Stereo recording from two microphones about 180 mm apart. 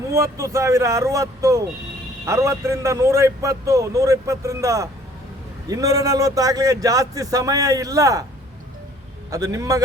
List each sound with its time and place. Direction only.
0.1 s a man's voice: 15° right (ahead or behind)
9.3 s a man's voice: 20° right (ahead or behind)